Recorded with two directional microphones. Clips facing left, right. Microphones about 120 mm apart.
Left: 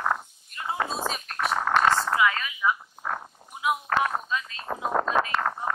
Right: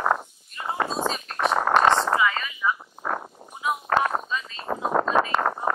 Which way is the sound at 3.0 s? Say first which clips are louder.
Right 3 dB; 40° right (ahead or behind).